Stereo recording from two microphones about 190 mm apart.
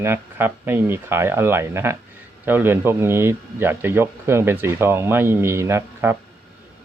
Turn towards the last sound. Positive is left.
turn(degrees=-15)  # may be behind; listen again after turning